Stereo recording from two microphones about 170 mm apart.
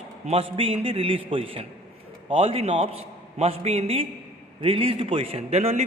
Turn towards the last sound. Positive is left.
turn(degrees=-40)  # may be behind; listen again after turning